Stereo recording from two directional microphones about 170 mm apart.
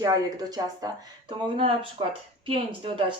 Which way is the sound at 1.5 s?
30° right (ahead or behind).